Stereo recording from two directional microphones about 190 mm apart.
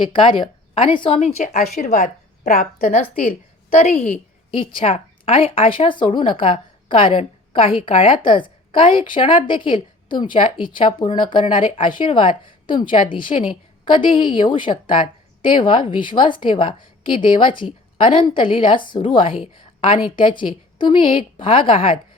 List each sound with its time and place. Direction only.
0.0 s a woman's voice: 25° left (ahead or behind); by 4.2 s 50° left (ahead or behind)
4.5 s a woman's voice: 30° left (ahead or behind)